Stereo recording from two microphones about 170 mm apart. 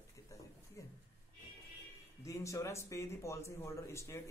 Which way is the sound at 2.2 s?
20° left (ahead or behind).